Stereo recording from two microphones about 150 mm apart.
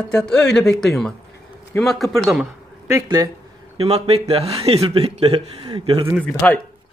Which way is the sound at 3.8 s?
40° right (ahead or behind).